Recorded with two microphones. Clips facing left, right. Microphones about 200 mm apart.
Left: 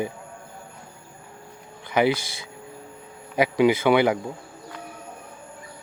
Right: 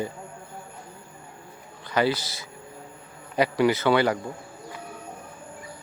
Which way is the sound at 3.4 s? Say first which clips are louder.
Left 2 dB; 15° left (ahead or behind).